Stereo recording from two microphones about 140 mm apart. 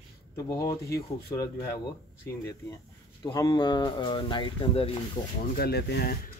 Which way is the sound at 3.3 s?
30° left (ahead or behind).